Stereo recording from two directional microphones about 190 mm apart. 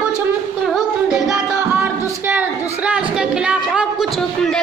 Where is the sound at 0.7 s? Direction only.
Centre (ahead or behind).